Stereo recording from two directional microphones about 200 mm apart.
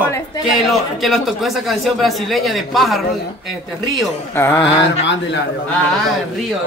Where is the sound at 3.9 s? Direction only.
10° left (ahead or behind).